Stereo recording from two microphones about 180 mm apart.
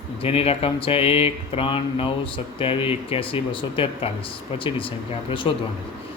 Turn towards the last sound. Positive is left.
turn(degrees=30)  # may be behind; listen again after turning